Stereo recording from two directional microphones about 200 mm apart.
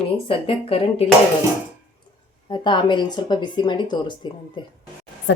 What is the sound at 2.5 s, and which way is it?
Speech, 25° left (ahead or behind).